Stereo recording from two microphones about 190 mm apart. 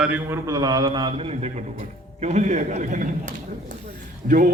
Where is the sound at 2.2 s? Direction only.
40° right (ahead or behind).